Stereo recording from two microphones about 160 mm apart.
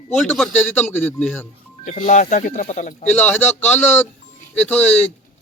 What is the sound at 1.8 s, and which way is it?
Speech, 40° left (ahead or behind).